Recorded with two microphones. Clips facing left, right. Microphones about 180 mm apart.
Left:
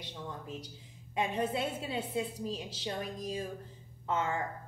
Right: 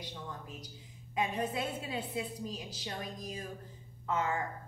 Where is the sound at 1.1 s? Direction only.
30° left (ahead or behind).